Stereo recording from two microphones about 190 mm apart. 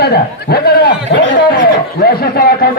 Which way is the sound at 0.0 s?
55° left (ahead or behind).